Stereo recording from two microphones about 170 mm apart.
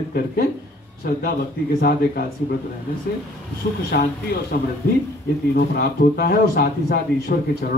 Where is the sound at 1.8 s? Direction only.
65° left (ahead or behind).